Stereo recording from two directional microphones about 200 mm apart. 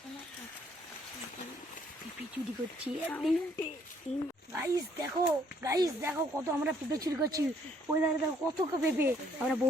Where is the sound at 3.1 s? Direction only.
Centre (ahead or behind).